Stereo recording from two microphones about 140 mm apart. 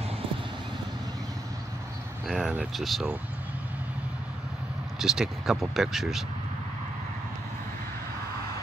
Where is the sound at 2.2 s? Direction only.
Centre (ahead or behind).